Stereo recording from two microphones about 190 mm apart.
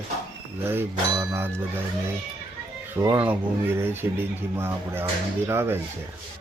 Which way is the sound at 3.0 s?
10° right (ahead or behind).